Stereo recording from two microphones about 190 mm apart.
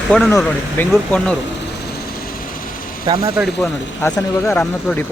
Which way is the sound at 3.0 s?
20° right (ahead or behind).